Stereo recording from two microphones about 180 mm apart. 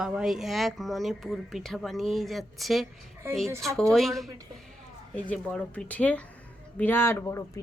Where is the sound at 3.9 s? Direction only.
Centre (ahead or behind).